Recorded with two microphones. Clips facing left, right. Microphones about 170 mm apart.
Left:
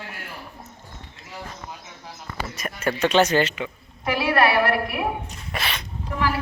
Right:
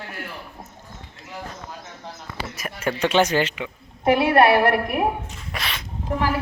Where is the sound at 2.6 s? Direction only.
10° right (ahead or behind).